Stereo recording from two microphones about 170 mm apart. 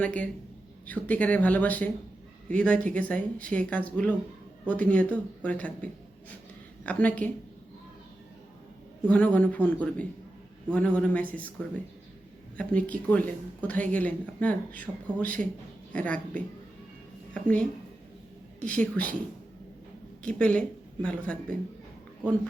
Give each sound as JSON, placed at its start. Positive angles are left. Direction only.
{"t": 0.0, "sound": "speech", "side_deg": 10}
{"t": 9.0, "sound": "speech", "side_deg": 10}
{"t": 12.5, "sound": "speech", "side_deg": 10}
{"t": 20.2, "sound": "speech", "side_deg": 5}